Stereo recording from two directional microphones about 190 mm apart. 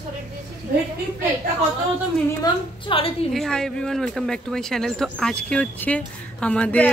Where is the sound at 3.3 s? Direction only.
Centre (ahead or behind).